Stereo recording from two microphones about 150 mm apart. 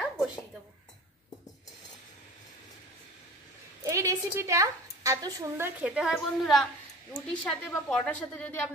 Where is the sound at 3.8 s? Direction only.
20° right (ahead or behind).